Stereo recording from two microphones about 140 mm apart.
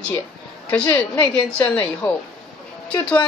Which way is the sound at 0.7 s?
10° left (ahead or behind).